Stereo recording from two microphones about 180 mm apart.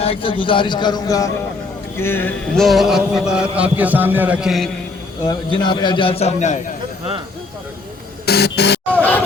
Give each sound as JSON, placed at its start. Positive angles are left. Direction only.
{"t": 0.0, "sound": "a man's voice", "side_deg": 30}
{"t": 2.0, "sound": "mantra", "side_deg": 10}
{"t": 3.5, "sound": "a man's voice", "side_deg": -10}
{"t": 5.3, "sound": "a man's voice", "side_deg": 25}
{"t": 8.3, "sound": "music", "side_deg": 65}